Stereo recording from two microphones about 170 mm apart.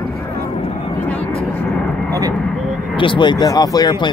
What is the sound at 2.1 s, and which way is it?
Speech, 20° right (ahead or behind).